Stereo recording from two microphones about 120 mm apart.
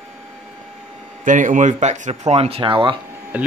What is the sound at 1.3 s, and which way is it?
Speech, 90° right.